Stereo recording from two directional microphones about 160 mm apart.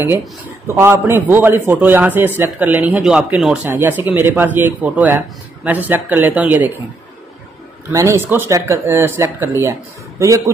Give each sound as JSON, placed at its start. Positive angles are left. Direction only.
{"t": 0.7, "sound": "a man's voice", "side_deg": -15}
{"t": 7.9, "sound": "a man's voice", "side_deg": -20}